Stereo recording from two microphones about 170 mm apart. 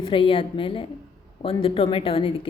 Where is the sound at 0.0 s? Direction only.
30° left (ahead or behind).